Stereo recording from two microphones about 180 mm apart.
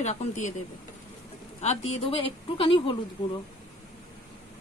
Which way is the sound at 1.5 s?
35° left (ahead or behind).